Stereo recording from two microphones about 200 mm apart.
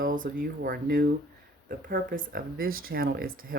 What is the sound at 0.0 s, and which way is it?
Speech, 45° right (ahead or behind).